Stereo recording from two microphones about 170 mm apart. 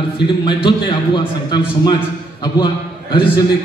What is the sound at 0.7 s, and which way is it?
A man's voice, 30° left (ahead or behind).